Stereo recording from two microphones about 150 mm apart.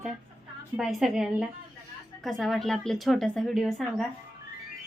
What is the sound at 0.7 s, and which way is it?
A woman's voice, centre (ahead or behind).